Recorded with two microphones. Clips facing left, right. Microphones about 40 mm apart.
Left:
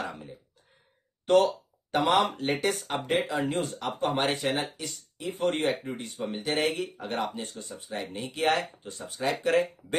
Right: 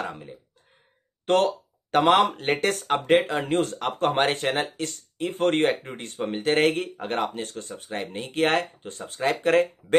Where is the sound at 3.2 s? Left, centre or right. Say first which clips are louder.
Right 4 dB; right.